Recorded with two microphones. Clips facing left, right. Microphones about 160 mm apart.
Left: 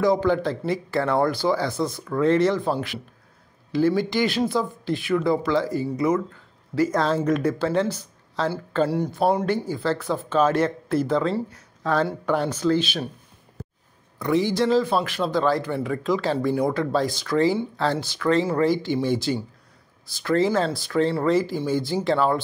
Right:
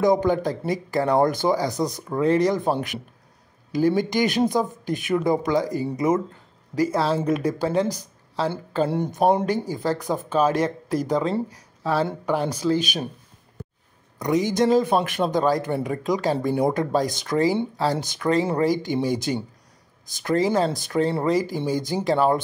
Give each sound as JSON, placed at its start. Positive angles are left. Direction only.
{"t": 0.0, "sound": "speech", "side_deg": -20}
{"t": 6.7, "sound": "speech", "side_deg": -10}
{"t": 8.8, "sound": "speech", "side_deg": -20}
{"t": 14.1, "sound": "speech", "side_deg": -20}